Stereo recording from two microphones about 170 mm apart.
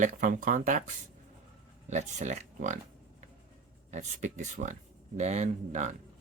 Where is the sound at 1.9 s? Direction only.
45° right (ahead or behind).